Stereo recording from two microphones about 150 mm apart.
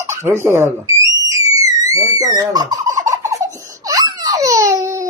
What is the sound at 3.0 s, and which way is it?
Baby laughter, 20° right (ahead or behind).